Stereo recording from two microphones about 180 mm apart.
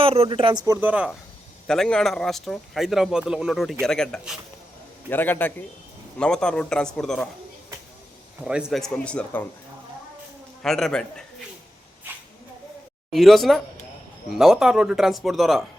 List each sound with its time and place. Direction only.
0.0 s speech: 30° right (ahead or behind)
0.6 s a man's voice: 15° right (ahead or behind); by 7.3 s 5° left (ahead or behind)
8.4 s speech: 5° right (ahead or behind)
10.6 s speech: centre (ahead or behind)
13.1 s speech: centre (ahead or behind)